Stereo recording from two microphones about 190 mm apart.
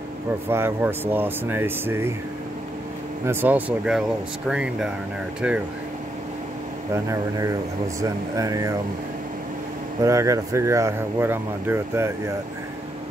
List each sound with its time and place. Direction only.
0.5 s speech: 10° right (ahead or behind)
3.3 s speech: 10° right (ahead or behind)
7.1 s speech: 15° right (ahead or behind)
10.0 s speech: 15° right (ahead or behind)